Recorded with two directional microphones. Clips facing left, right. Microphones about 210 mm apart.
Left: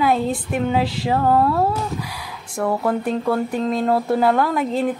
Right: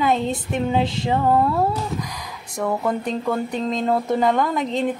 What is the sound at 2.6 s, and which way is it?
Speech, 5° left (ahead or behind).